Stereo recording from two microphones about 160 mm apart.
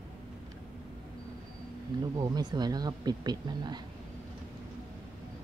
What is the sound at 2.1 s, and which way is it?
Speech, 25° right (ahead or behind).